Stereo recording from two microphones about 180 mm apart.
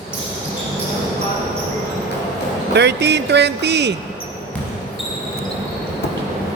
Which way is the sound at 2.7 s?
70° right (ahead or behind).